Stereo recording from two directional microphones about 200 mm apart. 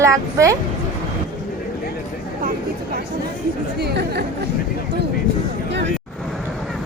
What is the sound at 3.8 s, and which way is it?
Chatter, 55° right (ahead or behind).